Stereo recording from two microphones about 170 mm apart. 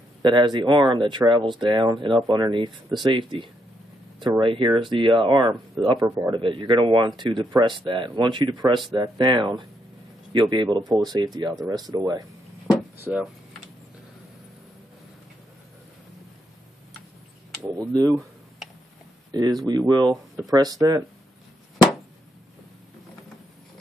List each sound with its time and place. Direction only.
0.2 s speech: 25° right (ahead or behind)
17.7 s speech: 20° right (ahead or behind)
19.3 s speech: 25° right (ahead or behind)